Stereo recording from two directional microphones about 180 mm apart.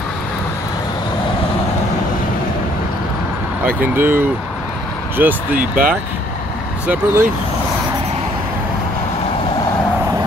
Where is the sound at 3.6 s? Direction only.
10° right (ahead or behind).